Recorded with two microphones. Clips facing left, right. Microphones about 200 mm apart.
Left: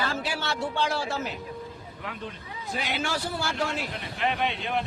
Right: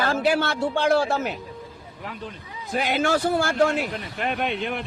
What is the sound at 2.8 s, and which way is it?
A man's voice, 50° right (ahead or behind).